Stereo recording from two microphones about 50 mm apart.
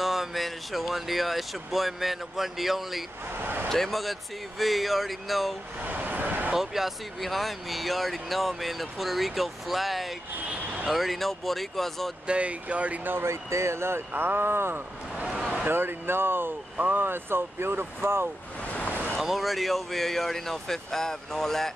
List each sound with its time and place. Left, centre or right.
0.0 s speech: centre
3.3 s a sound: right
3.6 s speech: centre
5.8 s vehicle: right
6.5 s speech: centre
12.3 s speech: right
13.2 s speech: right
18.7 s vehicle: left
19.1 s speech: centre